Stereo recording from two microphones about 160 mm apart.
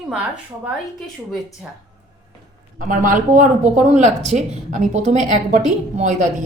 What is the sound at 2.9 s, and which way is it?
Speech, 55° right (ahead or behind).